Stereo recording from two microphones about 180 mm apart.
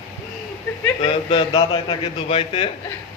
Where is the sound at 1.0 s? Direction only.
25° left (ahead or behind).